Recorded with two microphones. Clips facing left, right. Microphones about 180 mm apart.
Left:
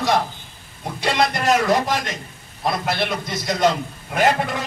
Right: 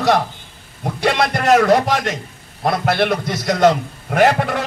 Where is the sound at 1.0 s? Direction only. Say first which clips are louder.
Right 3 dB; 60° right (ahead or behind).